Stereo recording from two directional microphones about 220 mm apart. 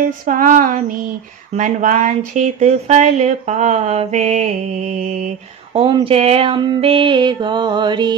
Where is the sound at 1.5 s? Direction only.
35° right (ahead or behind).